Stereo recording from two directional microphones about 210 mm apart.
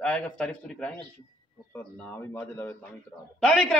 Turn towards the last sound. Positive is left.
turn(degrees=0)  # may be behind; listen again after turning